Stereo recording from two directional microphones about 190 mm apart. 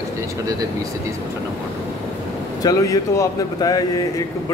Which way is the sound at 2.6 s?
15° left (ahead or behind).